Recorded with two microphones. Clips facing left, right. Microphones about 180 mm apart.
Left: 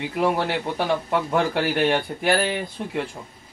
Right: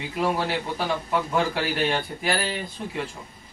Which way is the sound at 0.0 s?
60° left (ahead or behind).